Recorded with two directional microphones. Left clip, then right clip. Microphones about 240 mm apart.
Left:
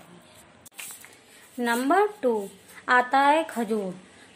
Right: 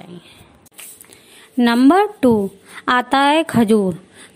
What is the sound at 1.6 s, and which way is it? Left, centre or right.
Speech, right.